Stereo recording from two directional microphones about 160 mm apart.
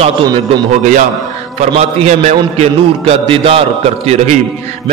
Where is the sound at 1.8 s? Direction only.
45° right (ahead or behind).